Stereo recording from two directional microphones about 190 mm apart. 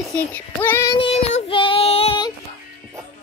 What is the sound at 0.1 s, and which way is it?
Child singing, 10° left (ahead or behind).